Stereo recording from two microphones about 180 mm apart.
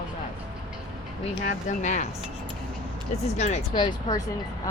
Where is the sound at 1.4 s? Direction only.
45° left (ahead or behind).